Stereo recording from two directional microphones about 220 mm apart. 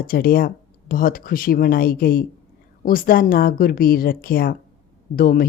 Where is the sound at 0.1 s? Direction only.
40° left (ahead or behind).